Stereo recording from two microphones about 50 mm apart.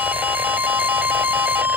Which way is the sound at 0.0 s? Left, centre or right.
Right.